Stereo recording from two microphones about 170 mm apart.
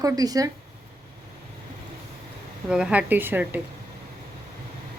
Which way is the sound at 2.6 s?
5° right (ahead or behind).